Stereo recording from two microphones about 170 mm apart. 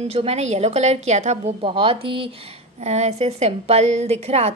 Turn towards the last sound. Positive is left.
turn(degrees=-35)  # may be behind; listen again after turning